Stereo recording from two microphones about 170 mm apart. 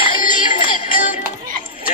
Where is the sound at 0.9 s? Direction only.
55° left (ahead or behind).